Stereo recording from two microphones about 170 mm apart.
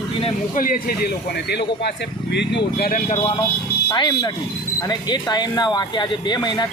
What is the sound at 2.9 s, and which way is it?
Speech, 45° left (ahead or behind).